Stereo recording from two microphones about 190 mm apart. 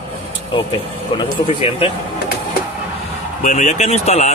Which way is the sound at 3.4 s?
40° left (ahead or behind).